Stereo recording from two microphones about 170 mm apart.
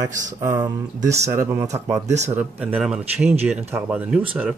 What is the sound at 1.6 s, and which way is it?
Speech, 40° right (ahead or behind).